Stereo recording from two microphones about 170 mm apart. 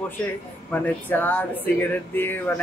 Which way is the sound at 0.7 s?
10° left (ahead or behind).